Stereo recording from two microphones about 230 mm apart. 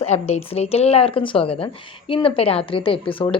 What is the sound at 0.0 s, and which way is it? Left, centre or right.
A woman's voice, left.